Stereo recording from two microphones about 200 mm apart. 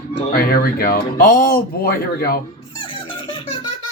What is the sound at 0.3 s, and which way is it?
Speech, 50° left (ahead or behind).